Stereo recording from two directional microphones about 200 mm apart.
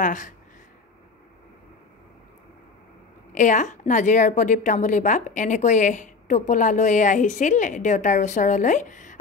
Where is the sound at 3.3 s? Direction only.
40° left (ahead or behind).